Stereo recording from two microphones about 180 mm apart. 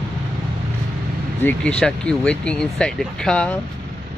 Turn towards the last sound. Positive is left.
turn(degrees=5)  # may be behind; listen again after turning